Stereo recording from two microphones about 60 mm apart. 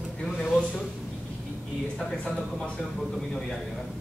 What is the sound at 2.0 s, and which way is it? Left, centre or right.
Speech, centre.